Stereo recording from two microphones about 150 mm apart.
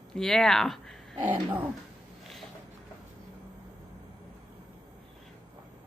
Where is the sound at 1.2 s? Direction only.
10° right (ahead or behind).